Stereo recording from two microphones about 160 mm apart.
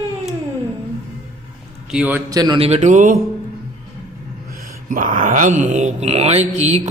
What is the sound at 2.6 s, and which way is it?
Mantra, 45° right (ahead or behind).